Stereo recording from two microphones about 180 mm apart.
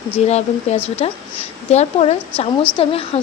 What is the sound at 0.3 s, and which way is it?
Speech, 40° left (ahead or behind).